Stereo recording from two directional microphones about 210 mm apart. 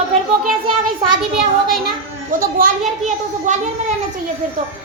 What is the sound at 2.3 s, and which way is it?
A woman's voice, 40° right (ahead or behind).